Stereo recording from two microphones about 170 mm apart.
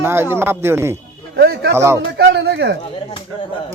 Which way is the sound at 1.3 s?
70° right (ahead or behind).